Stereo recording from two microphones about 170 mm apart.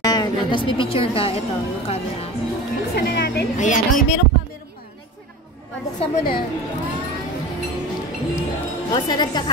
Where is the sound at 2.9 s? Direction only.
70° left (ahead or behind).